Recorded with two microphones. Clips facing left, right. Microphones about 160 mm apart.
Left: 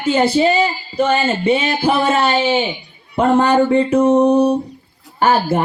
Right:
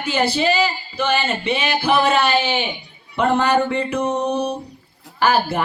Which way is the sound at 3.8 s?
40° left (ahead or behind).